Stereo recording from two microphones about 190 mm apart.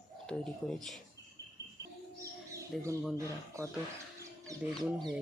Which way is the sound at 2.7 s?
Centre (ahead or behind).